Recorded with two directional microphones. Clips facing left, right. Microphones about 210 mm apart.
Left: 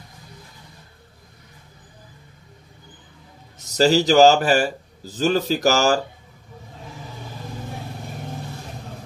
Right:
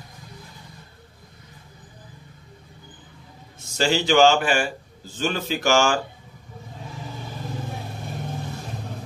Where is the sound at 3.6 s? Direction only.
40° left (ahead or behind).